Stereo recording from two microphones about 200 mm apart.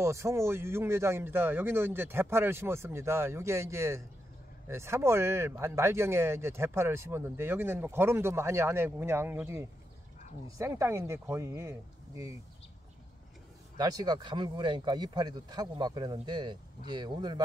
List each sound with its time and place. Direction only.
0.0 s speech: 15° right (ahead or behind)
13.7 s speech: 20° right (ahead or behind)